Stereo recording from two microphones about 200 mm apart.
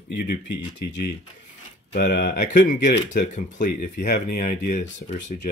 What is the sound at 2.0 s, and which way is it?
Speech, 40° left (ahead or behind).